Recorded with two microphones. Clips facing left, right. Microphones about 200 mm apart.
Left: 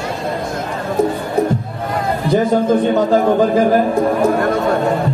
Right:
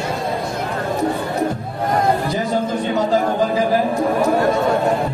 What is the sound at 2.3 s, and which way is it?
Speech, 50° left (ahead or behind).